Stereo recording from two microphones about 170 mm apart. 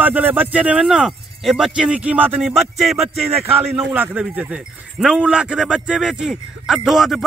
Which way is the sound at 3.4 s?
10° right (ahead or behind).